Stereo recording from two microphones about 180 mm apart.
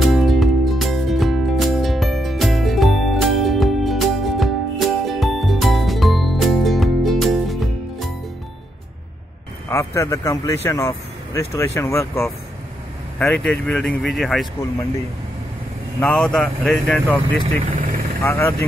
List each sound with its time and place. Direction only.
0.0 s music: centre (ahead or behind)
9.7 s speech: 15° left (ahead or behind)
16.0 s speech: 5° left (ahead or behind)